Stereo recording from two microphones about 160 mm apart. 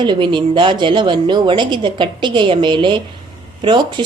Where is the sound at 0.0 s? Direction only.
30° right (ahead or behind).